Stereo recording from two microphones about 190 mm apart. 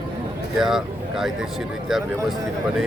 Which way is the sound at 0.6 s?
Centre (ahead or behind).